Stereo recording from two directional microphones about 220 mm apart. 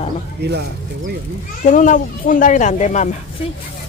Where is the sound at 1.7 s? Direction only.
35° left (ahead or behind).